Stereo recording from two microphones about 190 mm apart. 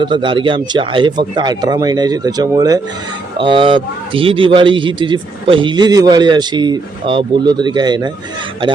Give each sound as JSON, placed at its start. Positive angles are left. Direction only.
{"t": 0.0, "sound": "a man's voice", "side_deg": -25}